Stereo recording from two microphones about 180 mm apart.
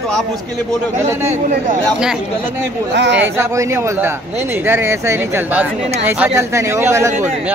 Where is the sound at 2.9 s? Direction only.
75° right (ahead or behind).